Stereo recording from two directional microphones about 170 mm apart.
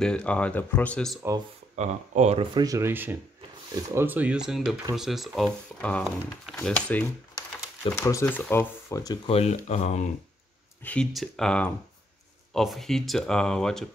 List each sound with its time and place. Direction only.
0.0 s speech: 5° left (ahead or behind)
1.8 s speech: 40° right (ahead or behind)
2.5 s speech: 20° right (ahead or behind); by 7.1 s 5° left (ahead or behind)
7.3 s speech: 20° left (ahead or behind)
9.3 s speech: 35° left (ahead or behind)
10.8 s speech: 5° left (ahead or behind)